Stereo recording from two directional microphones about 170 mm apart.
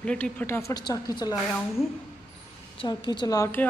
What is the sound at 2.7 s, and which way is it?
Speech, 25° left (ahead or behind).